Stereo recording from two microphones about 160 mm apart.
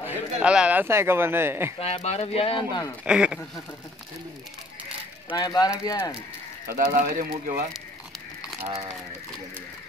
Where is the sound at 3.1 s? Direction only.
5° right (ahead or behind).